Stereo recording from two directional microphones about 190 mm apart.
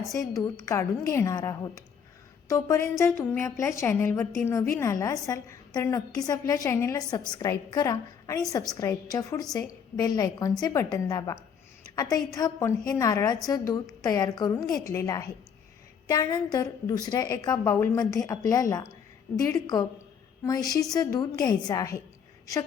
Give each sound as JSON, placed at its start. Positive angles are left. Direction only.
{"t": 0.3, "sound": "a woman's voice", "side_deg": 15}